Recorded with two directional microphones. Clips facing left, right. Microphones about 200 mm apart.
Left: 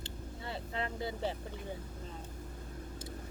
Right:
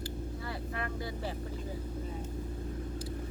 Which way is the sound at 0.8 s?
25° left (ahead or behind).